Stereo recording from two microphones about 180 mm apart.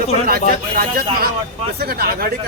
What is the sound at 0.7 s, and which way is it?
Speech, 55° right (ahead or behind).